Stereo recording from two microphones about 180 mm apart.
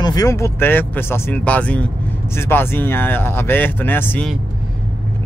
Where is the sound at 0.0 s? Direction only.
20° left (ahead or behind).